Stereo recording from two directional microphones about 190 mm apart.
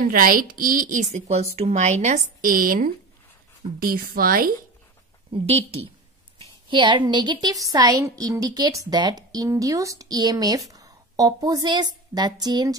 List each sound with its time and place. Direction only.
0.0 s a woman's voice: 50° right (ahead or behind)
5.3 s a woman's voice: 30° right (ahead or behind)